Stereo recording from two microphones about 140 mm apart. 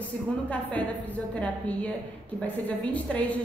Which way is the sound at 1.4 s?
10° left (ahead or behind).